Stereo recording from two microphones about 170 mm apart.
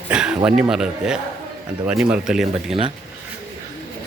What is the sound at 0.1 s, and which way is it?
A man's voice, 5° right (ahead or behind).